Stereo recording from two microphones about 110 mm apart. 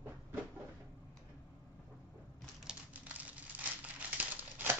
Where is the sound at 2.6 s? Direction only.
15° right (ahead or behind).